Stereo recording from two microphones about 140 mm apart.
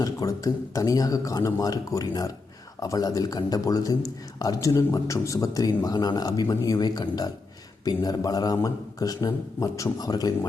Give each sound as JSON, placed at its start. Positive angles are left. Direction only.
{"t": 0.0, "sound": "a man's voice", "side_deg": 25}